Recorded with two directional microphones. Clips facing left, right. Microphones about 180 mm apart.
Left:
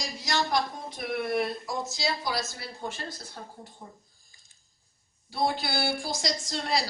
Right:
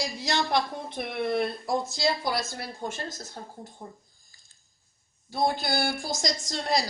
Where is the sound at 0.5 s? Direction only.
55° right (ahead or behind).